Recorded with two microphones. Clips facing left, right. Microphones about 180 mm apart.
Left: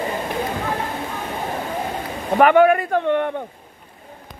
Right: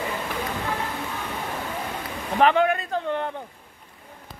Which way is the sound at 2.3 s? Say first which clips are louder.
Left 6 dB; 60° left (ahead or behind).